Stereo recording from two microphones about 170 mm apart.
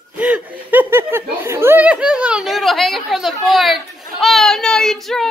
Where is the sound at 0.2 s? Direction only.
10° right (ahead or behind).